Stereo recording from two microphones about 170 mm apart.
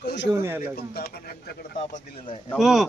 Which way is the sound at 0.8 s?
65° left (ahead or behind).